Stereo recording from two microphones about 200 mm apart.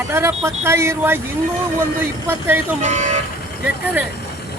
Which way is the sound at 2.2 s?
10° right (ahead or behind).